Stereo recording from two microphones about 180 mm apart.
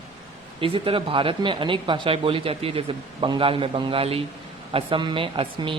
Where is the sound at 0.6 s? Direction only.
30° right (ahead or behind).